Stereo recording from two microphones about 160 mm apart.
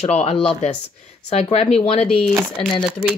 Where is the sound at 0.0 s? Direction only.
40° left (ahead or behind).